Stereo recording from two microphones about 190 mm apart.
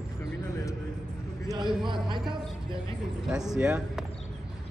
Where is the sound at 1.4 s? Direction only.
25° right (ahead or behind).